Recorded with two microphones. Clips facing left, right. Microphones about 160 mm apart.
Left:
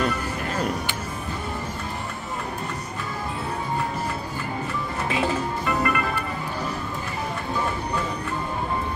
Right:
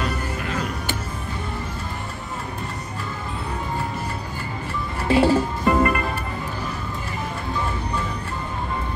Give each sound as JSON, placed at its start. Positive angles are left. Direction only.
{"t": 5.0, "sound": "music", "side_deg": -30}